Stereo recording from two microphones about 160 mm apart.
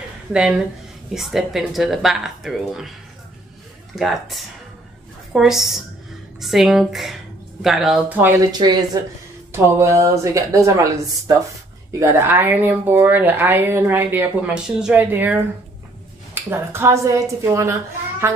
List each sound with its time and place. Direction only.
0.3 s speech: 5° right (ahead or behind)
3.9 s speech: centre (ahead or behind)
8.5 s a woman's voice: 25° right (ahead or behind)